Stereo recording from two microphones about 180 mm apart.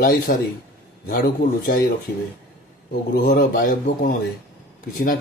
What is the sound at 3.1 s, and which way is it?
A man's voice, 50° left (ahead or behind).